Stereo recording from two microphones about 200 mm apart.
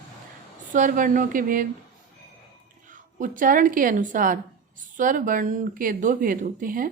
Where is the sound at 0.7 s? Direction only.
40° right (ahead or behind).